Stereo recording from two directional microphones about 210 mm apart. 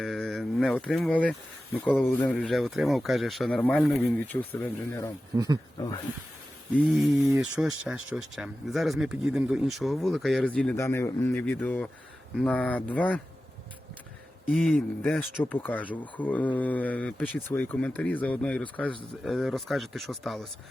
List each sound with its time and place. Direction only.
0.0 s speech: centre (ahead or behind); by 6.0 s 20° left (ahead or behind)
6.7 s speech: centre (ahead or behind)
14.5 s speech: centre (ahead or behind)